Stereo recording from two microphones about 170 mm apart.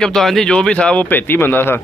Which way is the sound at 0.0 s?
Centre (ahead or behind).